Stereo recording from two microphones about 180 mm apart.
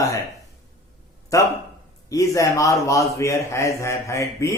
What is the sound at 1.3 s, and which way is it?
A man's voice, 20° left (ahead or behind).